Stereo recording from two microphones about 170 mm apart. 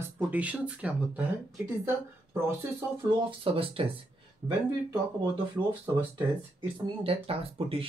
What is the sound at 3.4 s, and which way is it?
Speech, 30° right (ahead or behind).